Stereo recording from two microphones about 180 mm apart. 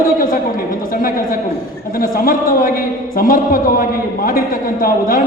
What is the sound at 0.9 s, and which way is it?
A woman's voice, 50° left (ahead or behind).